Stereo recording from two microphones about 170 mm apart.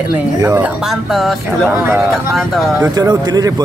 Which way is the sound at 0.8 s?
Centre (ahead or behind).